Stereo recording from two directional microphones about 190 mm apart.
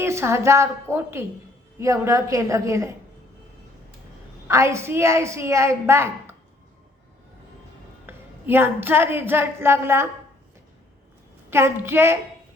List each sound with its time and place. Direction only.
0.0 s a woman's voice: 15° right (ahead or behind)
4.4 s a woman's voice: 15° right (ahead or behind)
8.0 s speech: 10° right (ahead or behind)
11.5 s a woman's voice: 10° right (ahead or behind)